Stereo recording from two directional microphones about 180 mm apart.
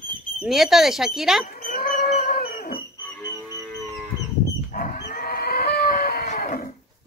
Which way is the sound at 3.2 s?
20° left (ahead or behind).